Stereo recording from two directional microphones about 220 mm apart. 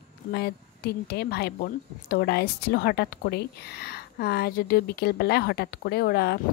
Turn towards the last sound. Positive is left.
turn(degrees=45)  # may be behind; listen again after turning